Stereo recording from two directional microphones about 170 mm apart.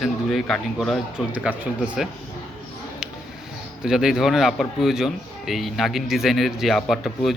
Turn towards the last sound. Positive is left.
turn(degrees=0)  # may be behind; listen again after turning